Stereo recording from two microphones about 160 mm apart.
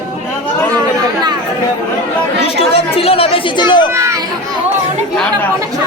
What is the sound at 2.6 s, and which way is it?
A man's voice, 35° left (ahead or behind).